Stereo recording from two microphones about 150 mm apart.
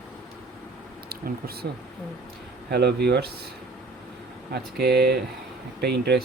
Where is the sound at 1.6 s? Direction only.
90° right.